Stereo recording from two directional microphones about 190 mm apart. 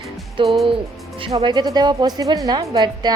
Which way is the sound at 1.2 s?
30° right (ahead or behind).